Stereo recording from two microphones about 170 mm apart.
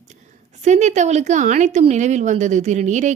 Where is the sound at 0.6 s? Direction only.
45° right (ahead or behind).